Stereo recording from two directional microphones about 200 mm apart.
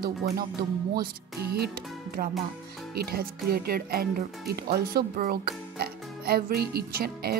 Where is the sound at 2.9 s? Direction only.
50° right (ahead or behind).